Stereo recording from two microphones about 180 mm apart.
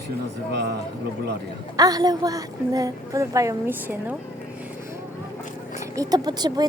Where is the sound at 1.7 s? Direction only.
20° right (ahead or behind).